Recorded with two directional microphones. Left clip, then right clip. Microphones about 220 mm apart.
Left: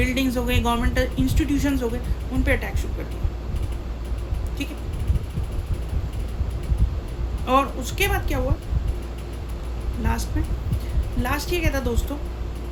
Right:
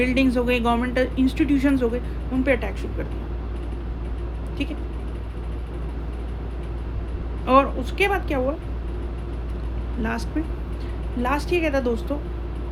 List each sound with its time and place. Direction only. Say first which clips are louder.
0.0 s speech: right 3 dB; 20° left (ahead or behind)
7.4 s speech: right 3 dB; 20° left (ahead or behind)
10.0 s speech: right 2 dB; 20° left (ahead or behind)